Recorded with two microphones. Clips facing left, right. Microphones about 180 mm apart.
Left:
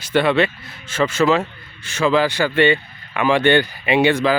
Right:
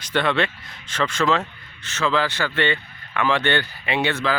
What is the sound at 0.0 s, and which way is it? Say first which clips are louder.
Speech: left 5 dB; 5° left (ahead or behind).